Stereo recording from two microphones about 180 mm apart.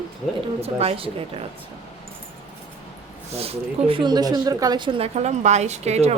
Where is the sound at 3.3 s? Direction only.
30° right (ahead or behind).